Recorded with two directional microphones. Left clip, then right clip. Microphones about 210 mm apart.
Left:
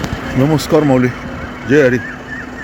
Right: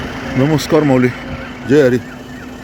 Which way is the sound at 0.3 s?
Centre (ahead or behind).